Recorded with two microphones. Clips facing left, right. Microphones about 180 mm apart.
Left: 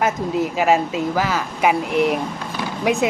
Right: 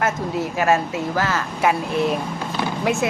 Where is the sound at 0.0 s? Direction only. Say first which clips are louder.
Left 3 dB; 15° left (ahead or behind).